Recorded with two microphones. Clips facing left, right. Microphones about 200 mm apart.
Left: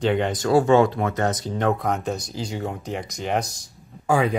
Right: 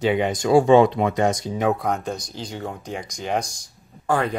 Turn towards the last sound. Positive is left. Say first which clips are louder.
# left 2 dB
turn(degrees=5)  # may be behind; listen again after turning